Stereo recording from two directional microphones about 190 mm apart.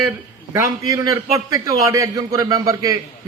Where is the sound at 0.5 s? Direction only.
20° right (ahead or behind).